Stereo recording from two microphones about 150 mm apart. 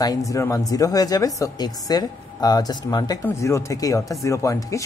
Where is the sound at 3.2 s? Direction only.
15° left (ahead or behind).